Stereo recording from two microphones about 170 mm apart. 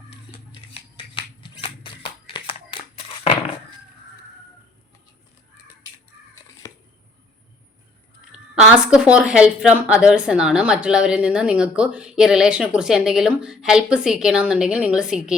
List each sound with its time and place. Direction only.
0.5 s scissors: 30° left (ahead or behind)
6.6 s a sound: 20° left (ahead or behind)
8.3 s a woman's voice: 5° right (ahead or behind)